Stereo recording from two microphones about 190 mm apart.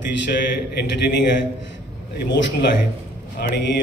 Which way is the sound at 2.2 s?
65° left (ahead or behind).